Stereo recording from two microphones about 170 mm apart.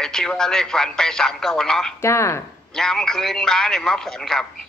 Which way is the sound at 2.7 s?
5° left (ahead or behind).